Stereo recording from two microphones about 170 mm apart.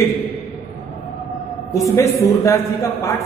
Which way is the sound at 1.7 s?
15° left (ahead or behind).